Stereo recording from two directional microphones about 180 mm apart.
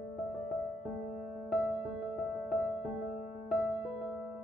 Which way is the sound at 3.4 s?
Centre (ahead or behind).